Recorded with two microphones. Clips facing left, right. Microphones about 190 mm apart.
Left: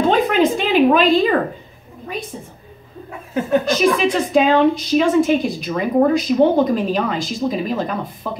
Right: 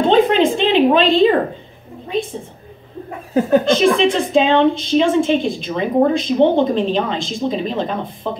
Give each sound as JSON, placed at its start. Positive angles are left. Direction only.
{"t": 0.1, "sound": "a sound", "side_deg": -25}
{"t": 0.7, "sound": "a woman's voice", "side_deg": -25}
{"t": 3.3, "sound": "speech", "side_deg": -35}